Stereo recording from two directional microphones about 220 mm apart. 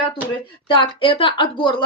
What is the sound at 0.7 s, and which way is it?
Speech, 20° left (ahead or behind).